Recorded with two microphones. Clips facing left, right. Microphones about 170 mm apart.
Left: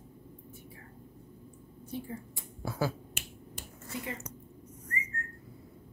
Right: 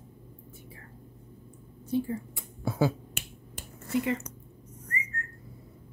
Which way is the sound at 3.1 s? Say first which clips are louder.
Right 2 dB; 60° right (ahead or behind).